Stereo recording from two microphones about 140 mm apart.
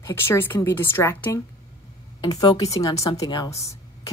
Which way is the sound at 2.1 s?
30° left (ahead or behind).